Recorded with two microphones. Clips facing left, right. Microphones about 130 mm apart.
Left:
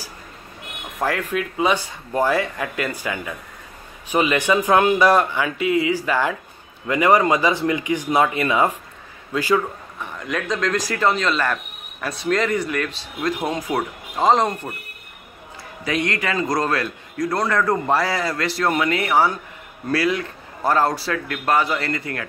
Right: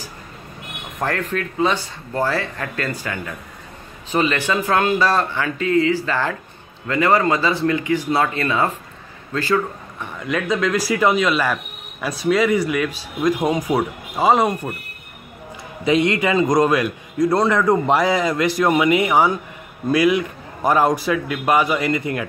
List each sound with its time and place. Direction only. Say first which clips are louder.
0.9 s speech: even; 5° left (ahead or behind)
9.9 s speech: right 3 dB; centre (ahead or behind)
15.8 s a man's voice: right 6 dB; 20° right (ahead or behind)